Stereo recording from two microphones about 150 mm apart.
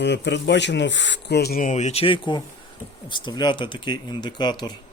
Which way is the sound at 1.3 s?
90° left.